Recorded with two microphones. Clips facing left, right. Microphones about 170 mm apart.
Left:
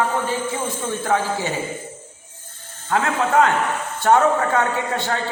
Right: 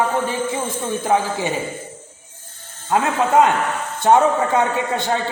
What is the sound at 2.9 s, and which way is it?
A man's voice, 20° right (ahead or behind).